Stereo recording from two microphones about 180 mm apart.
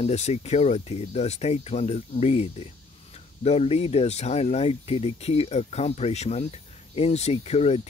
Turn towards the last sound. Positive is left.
turn(degrees=35)  # may be behind; listen again after turning